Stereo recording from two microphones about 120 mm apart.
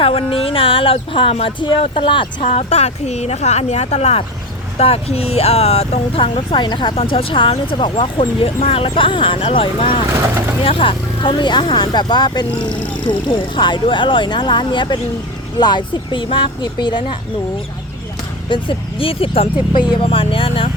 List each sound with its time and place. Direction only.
0.0 s speech: 50° left (ahead or behind)
2.4 s a woman's voice: 60° left (ahead or behind)
10.1 s speech: 25° right (ahead or behind)
10.6 s speech: 50° left (ahead or behind)
18.4 s speech: 45° left (ahead or behind)